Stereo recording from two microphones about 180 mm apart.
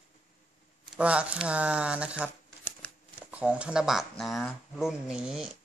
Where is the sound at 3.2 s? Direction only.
10° right (ahead or behind).